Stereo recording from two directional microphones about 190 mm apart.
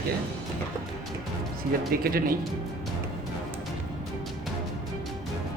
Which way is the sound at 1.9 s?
50° right (ahead or behind).